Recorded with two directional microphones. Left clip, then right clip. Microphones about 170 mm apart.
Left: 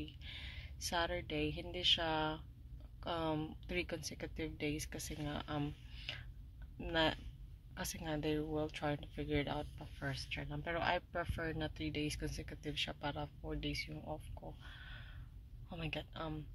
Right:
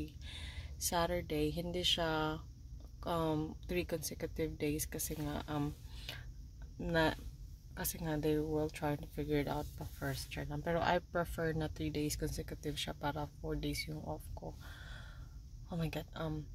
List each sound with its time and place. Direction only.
0.0 s speech: 20° right (ahead or behind)